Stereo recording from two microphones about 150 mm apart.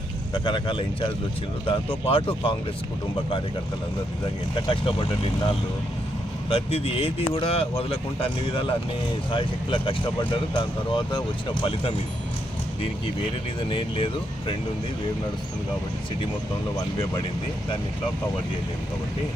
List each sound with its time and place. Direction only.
0.4 s speech: 30° left (ahead or behind)
4.5 s speech: 35° left (ahead or behind)
13.6 s speech: 35° left (ahead or behind)